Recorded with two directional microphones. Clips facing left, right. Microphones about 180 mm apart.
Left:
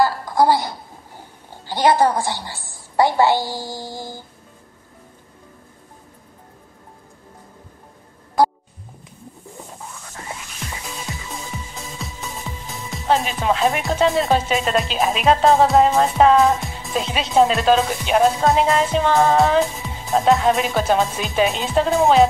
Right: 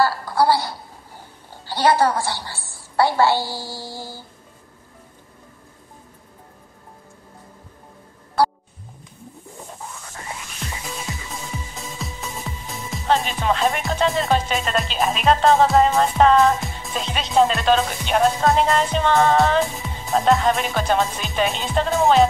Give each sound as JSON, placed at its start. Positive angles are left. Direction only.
{"t": 0.0, "sound": "speech", "side_deg": 15}
{"t": 11.1, "sound": "music", "side_deg": 0}
{"t": 11.7, "sound": "speech", "side_deg": 0}